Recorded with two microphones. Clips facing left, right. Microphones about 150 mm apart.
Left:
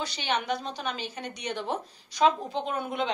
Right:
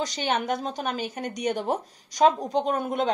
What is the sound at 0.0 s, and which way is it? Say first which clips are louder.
A woman's voice: right 4 dB; 45° right (ahead or behind).